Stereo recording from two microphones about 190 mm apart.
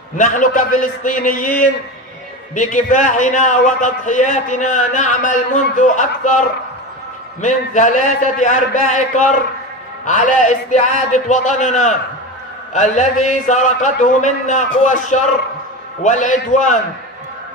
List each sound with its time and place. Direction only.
0.2 s a man's voice: 45° left (ahead or behind)
2.5 s a man's voice: 40° left (ahead or behind)
7.4 s a man's voice: 40° left (ahead or behind)